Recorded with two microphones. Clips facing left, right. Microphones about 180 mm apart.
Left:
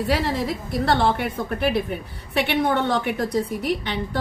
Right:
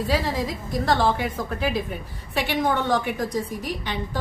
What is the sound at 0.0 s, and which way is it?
A woman's voice, 65° left (ahead or behind).